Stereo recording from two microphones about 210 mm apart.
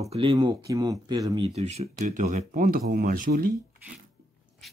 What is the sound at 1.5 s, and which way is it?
Speech, 30° right (ahead or behind).